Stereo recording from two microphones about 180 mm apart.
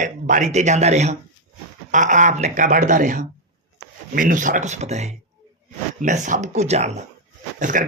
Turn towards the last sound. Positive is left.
turn(degrees=-45)  # may be behind; listen again after turning